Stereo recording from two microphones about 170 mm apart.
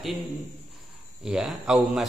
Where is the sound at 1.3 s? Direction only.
5° right (ahead or behind).